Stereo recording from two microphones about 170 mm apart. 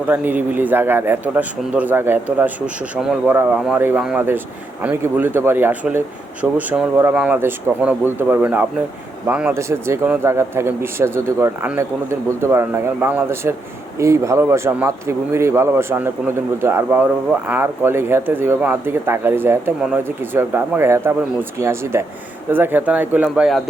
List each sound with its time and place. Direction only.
0.1 s speech: 10° right (ahead or behind)